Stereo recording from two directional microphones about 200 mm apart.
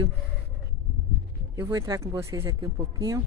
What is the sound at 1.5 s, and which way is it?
Speech, 15° right (ahead or behind).